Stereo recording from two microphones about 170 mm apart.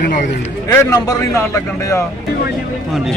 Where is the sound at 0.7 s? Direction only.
15° left (ahead or behind).